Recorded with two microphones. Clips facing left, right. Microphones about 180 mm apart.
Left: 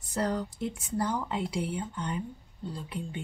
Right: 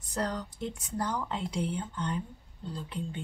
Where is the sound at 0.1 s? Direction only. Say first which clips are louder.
Left 3 dB; 10° left (ahead or behind).